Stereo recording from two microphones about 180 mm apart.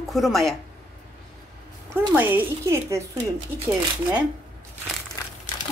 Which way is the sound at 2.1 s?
10° right (ahead or behind).